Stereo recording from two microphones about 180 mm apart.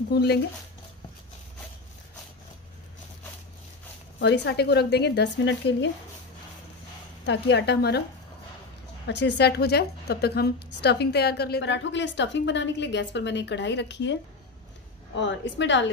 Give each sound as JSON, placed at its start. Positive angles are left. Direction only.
{"t": 0.1, "sound": "a woman's voice", "side_deg": 65}
{"t": 4.2, "sound": "a woman's voice", "side_deg": 70}
{"t": 7.2, "sound": "a woman's voice", "side_deg": 70}
{"t": 9.0, "sound": "a woman's voice", "side_deg": 75}
{"t": 15.1, "sound": "a woman's voice", "side_deg": 90}